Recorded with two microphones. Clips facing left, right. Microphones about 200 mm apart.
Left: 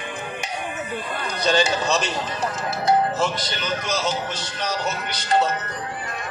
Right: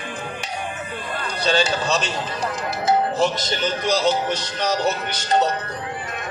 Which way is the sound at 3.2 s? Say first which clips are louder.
Right 3 dB; 45° right (ahead or behind).